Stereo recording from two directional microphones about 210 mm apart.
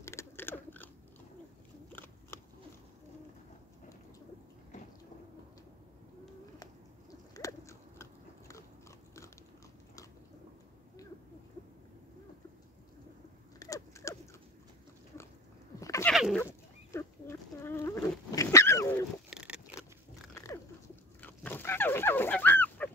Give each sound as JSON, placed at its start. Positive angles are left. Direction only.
{"t": 0.0, "sound": "crunch", "side_deg": 15}
{"t": 1.9, "sound": "cat", "side_deg": 10}
{"t": 6.6, "sound": "biting", "side_deg": 15}
{"t": 13.6, "sound": "rodents", "side_deg": 15}
{"t": 15.8, "sound": "a sound", "side_deg": 15}
{"t": 16.1, "sound": "a sound", "side_deg": 0}
{"t": 16.3, "sound": "dog", "side_deg": 10}
{"t": 19.3, "sound": "a sound", "side_deg": -5}
{"t": 20.3, "sound": "dog", "side_deg": 10}